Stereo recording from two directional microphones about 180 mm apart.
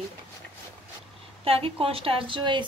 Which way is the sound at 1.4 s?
30° right (ahead or behind).